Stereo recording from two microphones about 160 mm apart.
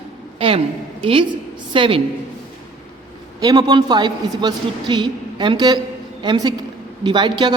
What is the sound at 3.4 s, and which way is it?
A woman's voice, 25° right (ahead or behind).